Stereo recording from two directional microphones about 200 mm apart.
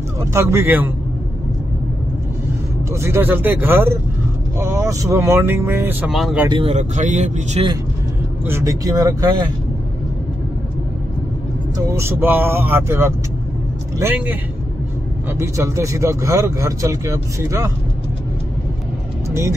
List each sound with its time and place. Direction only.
0.2 s speech: 15° right (ahead or behind)
2.9 s speech: 15° right (ahead or behind)
6.5 s speech: 30° right (ahead or behind)
8.5 s speech: 15° right (ahead or behind)
11.9 s speech: 10° right (ahead or behind)